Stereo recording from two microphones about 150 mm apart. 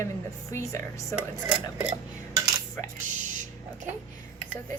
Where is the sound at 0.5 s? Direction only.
20° left (ahead or behind).